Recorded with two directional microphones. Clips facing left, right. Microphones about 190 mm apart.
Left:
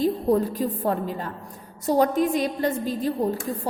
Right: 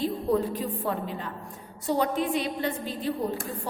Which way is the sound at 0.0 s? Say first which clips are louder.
Left 4 dB; 40° left (ahead or behind).